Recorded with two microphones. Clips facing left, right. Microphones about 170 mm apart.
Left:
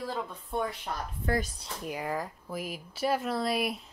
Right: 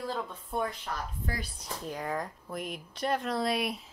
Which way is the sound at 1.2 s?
55° left (ahead or behind).